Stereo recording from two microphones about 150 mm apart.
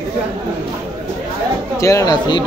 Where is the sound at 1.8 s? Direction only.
20° left (ahead or behind).